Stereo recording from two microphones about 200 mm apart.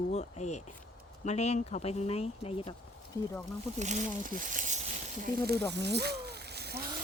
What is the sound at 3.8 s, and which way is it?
Speech, 40° right (ahead or behind).